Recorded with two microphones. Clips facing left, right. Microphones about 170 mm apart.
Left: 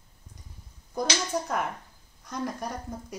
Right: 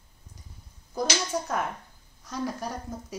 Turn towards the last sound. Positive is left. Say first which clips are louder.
# even
turn(degrees=0)  # may be behind; listen again after turning